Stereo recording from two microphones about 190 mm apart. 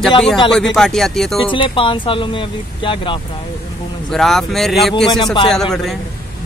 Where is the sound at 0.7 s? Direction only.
Centre (ahead or behind).